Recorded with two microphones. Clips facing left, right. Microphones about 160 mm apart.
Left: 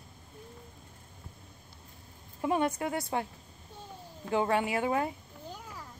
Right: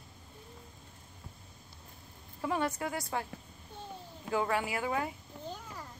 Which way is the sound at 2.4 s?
20° left (ahead or behind).